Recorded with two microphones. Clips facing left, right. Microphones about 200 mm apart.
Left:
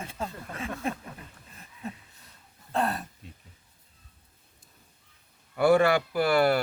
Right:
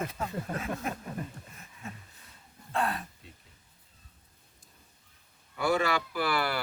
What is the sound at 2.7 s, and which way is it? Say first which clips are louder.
Speech: left 3 dB; 40° left (ahead or behind).